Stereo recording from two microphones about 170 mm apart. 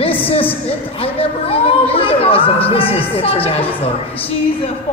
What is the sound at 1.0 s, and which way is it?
A woman's voice, 35° left (ahead or behind).